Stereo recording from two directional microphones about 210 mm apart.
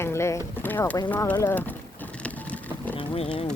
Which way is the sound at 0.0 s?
10° left (ahead or behind).